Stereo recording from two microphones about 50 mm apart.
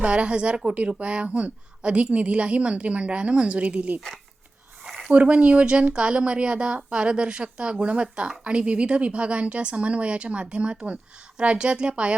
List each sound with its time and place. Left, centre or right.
0.0 s a woman's voice: right
5.1 s a woman's voice: right